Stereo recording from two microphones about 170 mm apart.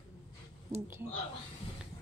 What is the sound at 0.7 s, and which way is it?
Speech, 15° right (ahead or behind).